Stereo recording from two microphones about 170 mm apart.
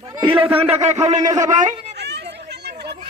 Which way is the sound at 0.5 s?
35° right (ahead or behind).